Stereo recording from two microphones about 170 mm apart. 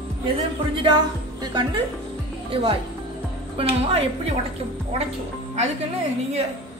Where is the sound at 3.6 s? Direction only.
35° right (ahead or behind).